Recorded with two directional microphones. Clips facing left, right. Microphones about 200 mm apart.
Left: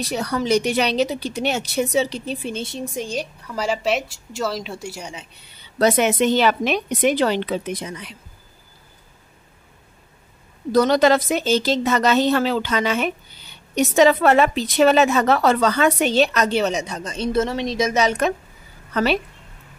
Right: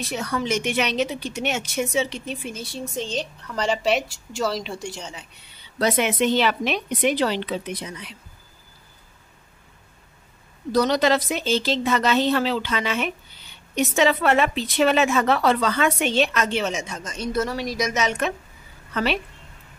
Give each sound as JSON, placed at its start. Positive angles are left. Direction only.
{"t": 0.0, "sound": "a woman's voice", "side_deg": 35}
{"t": 5.8, "sound": "a woman's voice", "side_deg": 45}
{"t": 10.7, "sound": "a woman's voice", "side_deg": 50}